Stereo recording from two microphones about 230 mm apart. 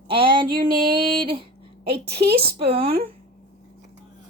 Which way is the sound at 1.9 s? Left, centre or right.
Right.